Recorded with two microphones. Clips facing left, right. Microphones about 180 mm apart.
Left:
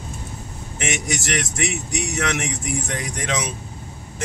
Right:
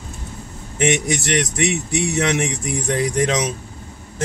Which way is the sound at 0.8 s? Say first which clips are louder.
Right 7 dB; 30° right (ahead or behind).